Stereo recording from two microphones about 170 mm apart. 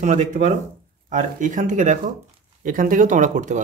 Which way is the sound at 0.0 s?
45° right (ahead or behind).